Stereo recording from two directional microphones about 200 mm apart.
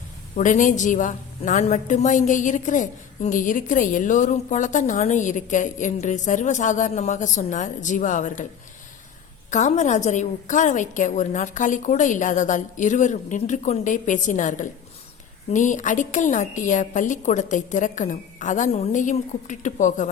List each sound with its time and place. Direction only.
0.3 s a woman's voice: 40° left (ahead or behind)
9.5 s a woman's voice: 35° left (ahead or behind)